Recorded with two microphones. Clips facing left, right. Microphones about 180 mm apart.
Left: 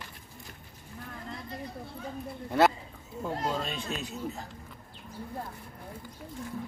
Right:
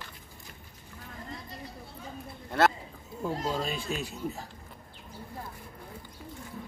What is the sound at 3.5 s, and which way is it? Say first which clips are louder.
Speech: right 2 dB; 5° right (ahead or behind).